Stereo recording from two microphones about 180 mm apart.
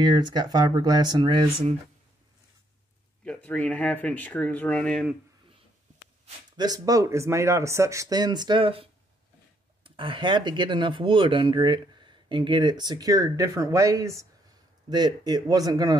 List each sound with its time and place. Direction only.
0.0 s speech: 25° right (ahead or behind)
3.3 s speech: 5° left (ahead or behind)
6.5 s speech: 20° right (ahead or behind)
9.8 s speech: 30° right (ahead or behind)